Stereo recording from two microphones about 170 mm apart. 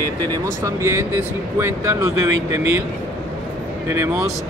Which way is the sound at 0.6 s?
15° right (ahead or behind).